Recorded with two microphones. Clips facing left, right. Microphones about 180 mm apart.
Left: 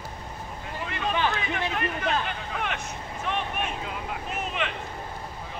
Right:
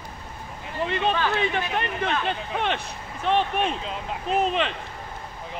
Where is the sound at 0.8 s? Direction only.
30° right (ahead or behind).